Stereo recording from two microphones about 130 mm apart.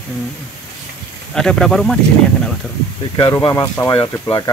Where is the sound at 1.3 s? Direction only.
5° left (ahead or behind).